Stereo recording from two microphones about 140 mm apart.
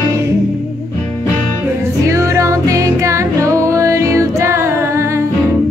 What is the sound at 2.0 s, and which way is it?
Music, 20° right (ahead or behind).